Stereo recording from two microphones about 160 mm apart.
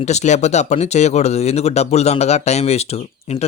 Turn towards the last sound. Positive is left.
turn(degrees=40)  # may be behind; listen again after turning